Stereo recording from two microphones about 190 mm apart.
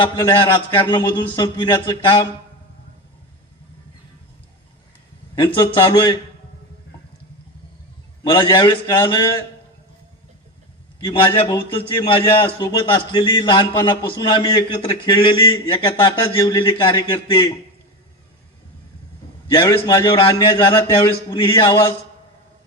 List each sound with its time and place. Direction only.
0.0 s a man's voice: 25° left (ahead or behind)
5.4 s a man's voice: 25° left (ahead or behind)
8.3 s a man's voice: 25° left (ahead or behind)
11.0 s a man's voice: 25° left (ahead or behind)
19.5 s a man's voice: 20° left (ahead or behind)